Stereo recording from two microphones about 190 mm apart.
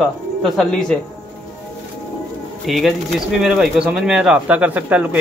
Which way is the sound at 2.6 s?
Centre (ahead or behind).